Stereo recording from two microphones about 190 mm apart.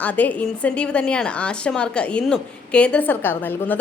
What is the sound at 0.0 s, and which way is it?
A woman's voice, 10° left (ahead or behind).